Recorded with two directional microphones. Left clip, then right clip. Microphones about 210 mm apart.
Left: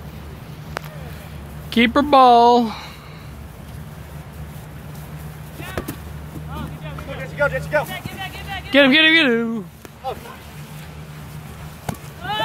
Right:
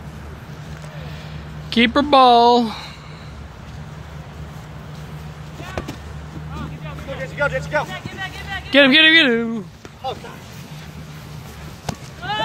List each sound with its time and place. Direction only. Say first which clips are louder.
1.7 s speech: even; 5° left (ahead or behind)
7.3 s speech: left 1 dB; 5° left (ahead or behind)
7.9 s vehicle: right 1 dB; 45° left (ahead or behind)
8.6 s speech: right 1 dB; centre (ahead or behind)
12.2 s a sound: right 1 dB; 15° left (ahead or behind)